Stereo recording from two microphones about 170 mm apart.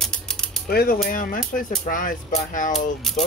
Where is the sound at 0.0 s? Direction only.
5° left (ahead or behind).